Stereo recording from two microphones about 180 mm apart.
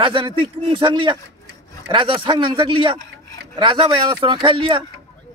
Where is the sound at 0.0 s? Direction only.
25° right (ahead or behind).